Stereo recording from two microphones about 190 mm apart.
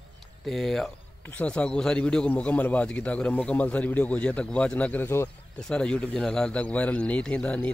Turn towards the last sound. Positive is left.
turn(degrees=5)  # may be behind; listen again after turning